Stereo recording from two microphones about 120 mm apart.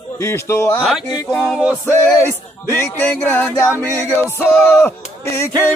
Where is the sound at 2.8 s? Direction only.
20° left (ahead or behind).